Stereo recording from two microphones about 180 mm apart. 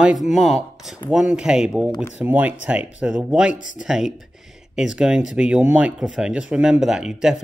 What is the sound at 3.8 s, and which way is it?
Speech, 5° right (ahead or behind).